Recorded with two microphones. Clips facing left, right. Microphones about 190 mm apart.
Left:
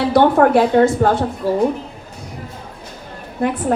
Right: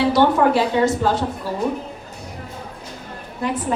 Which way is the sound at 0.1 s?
55° left (ahead or behind).